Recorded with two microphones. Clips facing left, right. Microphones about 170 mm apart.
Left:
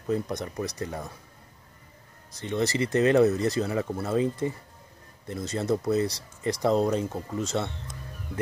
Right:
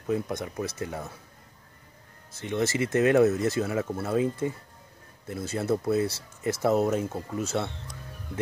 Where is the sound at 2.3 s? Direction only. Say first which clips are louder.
Even; 5° right (ahead or behind).